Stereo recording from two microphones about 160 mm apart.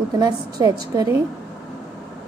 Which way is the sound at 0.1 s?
25° right (ahead or behind).